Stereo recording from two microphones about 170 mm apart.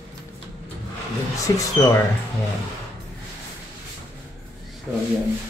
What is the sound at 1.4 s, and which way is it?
Speech, 20° left (ahead or behind).